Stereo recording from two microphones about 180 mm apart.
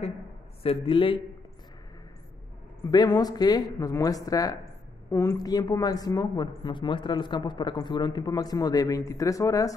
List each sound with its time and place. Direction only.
0.6 s a woman's voice: 30° left (ahead or behind)
2.9 s a woman's voice: 20° left (ahead or behind)